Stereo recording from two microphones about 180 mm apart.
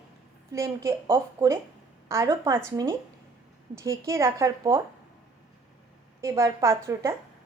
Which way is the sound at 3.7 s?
15° right (ahead or behind).